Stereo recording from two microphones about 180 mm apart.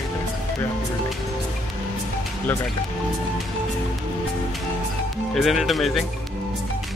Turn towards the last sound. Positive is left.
turn(degrees=0)  # may be behind; listen again after turning